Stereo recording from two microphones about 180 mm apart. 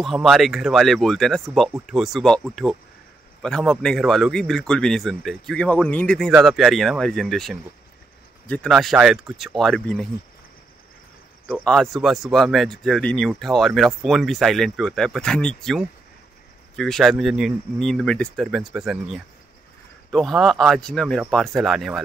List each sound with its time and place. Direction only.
0.0 s speech: centre (ahead or behind)
11.6 s speech: centre (ahead or behind)